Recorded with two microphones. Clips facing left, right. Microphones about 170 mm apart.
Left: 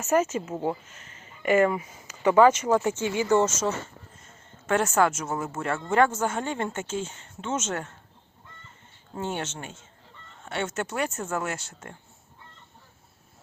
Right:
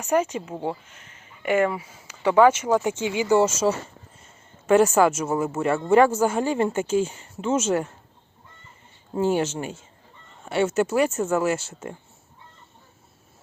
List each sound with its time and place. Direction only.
0.0 s speech: 15° right (ahead or behind)
9.1 s speech: 10° right (ahead or behind)